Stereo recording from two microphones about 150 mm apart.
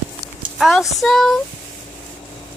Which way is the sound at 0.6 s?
Centre (ahead or behind).